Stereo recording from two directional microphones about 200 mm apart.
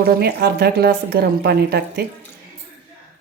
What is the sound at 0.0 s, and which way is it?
A woman's voice, 50° right (ahead or behind).